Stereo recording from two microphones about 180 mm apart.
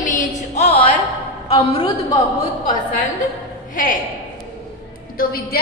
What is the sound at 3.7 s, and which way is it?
Speech, 50° left (ahead or behind).